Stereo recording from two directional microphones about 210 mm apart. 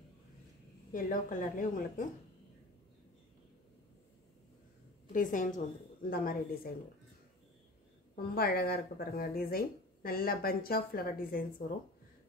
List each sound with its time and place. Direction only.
0.9 s a woman's voice: 40° left (ahead or behind)
5.1 s a woman's voice: 40° left (ahead or behind)
8.4 s speech: 45° left (ahead or behind)